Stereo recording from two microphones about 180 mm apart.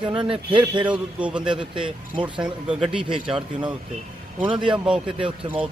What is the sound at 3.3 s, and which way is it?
Speech, 25° right (ahead or behind).